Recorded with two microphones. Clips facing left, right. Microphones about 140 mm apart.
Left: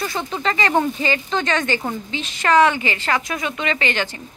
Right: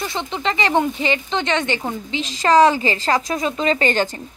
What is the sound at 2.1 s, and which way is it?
A woman's voice, 35° right (ahead or behind).